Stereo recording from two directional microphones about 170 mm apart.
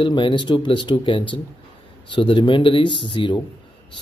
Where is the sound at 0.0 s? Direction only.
30° left (ahead or behind).